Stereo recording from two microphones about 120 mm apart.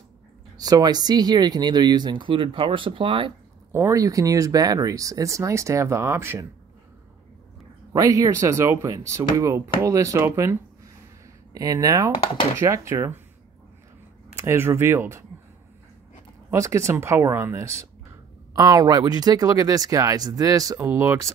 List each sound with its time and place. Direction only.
0.6 s speech: 30° right (ahead or behind)
3.7 s speech: 25° right (ahead or behind)
7.9 s speech: 30° right (ahead or behind)
14.3 s speech: 20° right (ahead or behind)
16.4 s speech: 25° right (ahead or behind)